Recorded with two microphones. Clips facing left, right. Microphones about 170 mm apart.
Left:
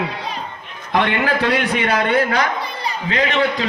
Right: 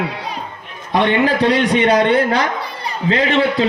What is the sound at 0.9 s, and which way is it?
Speech, 20° right (ahead or behind).